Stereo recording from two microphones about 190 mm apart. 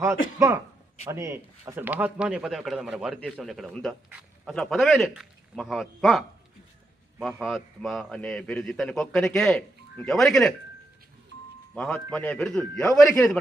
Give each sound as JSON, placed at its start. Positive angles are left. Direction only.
{"t": 0.3, "sound": "a man's voice", "side_deg": -15}
{"t": 11.7, "sound": "a man's voice", "side_deg": 0}